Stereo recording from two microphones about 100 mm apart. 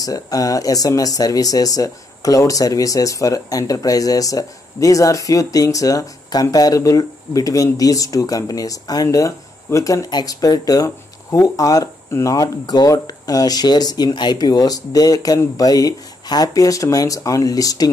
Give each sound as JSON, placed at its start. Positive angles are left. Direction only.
{"t": 0.0, "sound": "speech", "side_deg": 40}
{"t": 10.0, "sound": "speech", "side_deg": 40}